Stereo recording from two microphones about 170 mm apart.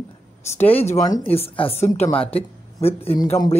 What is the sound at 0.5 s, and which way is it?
Speech, 35° left (ahead or behind).